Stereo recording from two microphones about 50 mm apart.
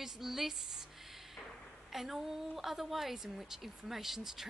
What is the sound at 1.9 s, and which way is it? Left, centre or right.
A woman's voice, centre.